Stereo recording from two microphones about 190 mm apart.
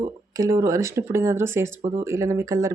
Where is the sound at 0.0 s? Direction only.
15° right (ahead or behind).